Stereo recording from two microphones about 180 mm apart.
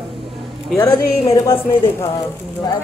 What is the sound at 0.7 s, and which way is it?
A woman's voice, 15° left (ahead or behind).